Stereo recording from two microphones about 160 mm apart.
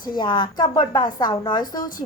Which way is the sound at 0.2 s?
30° left (ahead or behind).